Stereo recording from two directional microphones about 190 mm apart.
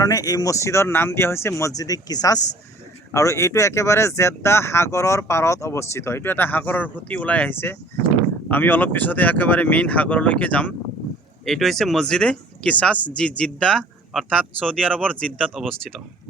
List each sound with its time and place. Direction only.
0.0 s speech: 20° left (ahead or behind); by 15.7 s centre (ahead or behind)